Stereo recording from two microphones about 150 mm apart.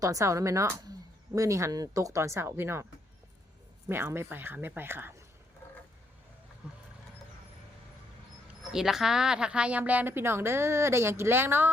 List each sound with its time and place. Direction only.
0.0 s speech: 20° right (ahead or behind)
3.8 s a woman's voice: 15° right (ahead or behind)
6.6 s vehicle: 10° right (ahead or behind)
8.7 s a woman's voice: 5° right (ahead or behind)